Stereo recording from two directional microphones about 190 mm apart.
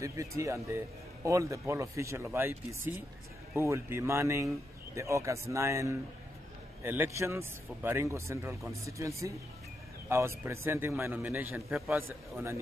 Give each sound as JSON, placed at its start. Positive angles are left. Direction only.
{"t": 0.0, "sound": "speech", "side_deg": -15}
{"t": 3.5, "sound": "speech", "side_deg": -15}